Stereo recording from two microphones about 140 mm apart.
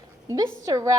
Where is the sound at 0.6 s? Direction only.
25° right (ahead or behind).